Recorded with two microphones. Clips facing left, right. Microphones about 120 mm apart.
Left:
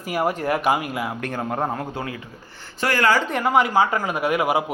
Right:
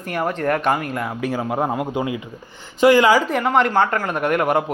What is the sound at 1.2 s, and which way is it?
A man's voice, 5° right (ahead or behind).